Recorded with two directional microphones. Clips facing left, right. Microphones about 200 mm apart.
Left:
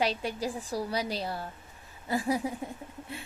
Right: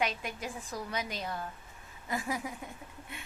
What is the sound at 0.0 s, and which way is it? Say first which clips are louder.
A woman's voice: left 5 dB; 35° left (ahead or behind).